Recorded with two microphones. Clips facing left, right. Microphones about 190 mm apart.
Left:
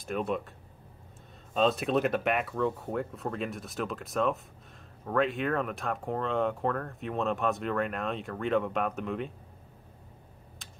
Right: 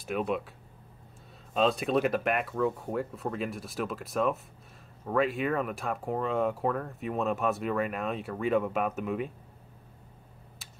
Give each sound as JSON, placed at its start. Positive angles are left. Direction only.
{"t": 0.0, "sound": "speech", "side_deg": 0}
{"t": 1.5, "sound": "speech", "side_deg": 0}